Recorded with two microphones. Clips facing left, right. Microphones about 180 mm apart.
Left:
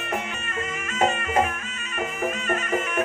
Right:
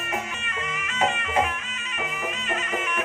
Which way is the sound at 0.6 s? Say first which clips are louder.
Left 2 dB; 50° left (ahead or behind).